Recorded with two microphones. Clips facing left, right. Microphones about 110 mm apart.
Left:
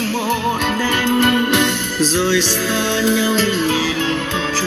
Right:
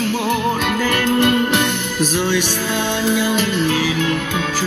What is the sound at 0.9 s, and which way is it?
Music, 20° left (ahead or behind).